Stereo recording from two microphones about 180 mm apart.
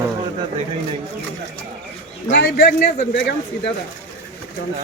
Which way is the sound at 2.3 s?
65° left (ahead or behind).